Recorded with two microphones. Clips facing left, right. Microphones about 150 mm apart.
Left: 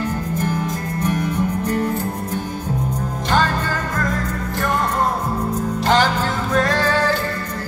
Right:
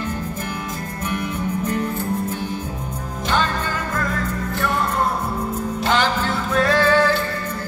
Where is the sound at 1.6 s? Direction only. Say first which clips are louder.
Even; 40° left (ahead or behind).